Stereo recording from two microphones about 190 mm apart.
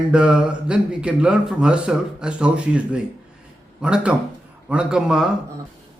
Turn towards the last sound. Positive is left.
turn(degrees=-5)  # may be behind; listen again after turning